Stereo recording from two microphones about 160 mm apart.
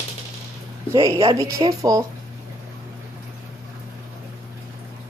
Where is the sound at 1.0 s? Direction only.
20° right (ahead or behind).